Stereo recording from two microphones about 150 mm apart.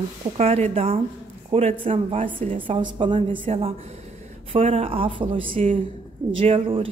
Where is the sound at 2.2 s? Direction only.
65° right (ahead or behind).